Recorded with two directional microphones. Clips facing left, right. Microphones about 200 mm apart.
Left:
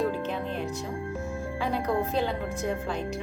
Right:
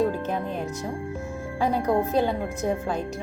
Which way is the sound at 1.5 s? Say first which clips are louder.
Right 5 dB; 45° right (ahead or behind).